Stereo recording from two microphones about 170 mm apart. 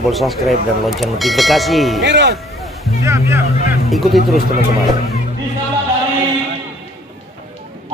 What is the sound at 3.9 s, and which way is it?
Speech, centre (ahead or behind).